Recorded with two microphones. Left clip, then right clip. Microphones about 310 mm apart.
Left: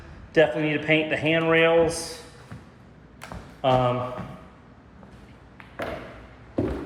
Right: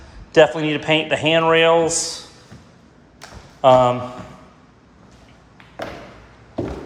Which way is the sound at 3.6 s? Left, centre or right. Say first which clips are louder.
Right 9 dB; centre.